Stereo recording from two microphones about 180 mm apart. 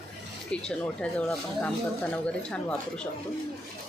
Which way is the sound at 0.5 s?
5° left (ahead or behind).